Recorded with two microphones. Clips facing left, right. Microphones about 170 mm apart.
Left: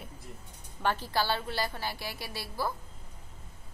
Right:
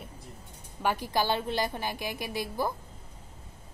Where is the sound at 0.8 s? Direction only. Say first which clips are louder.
Right 2 dB; 10° right (ahead or behind).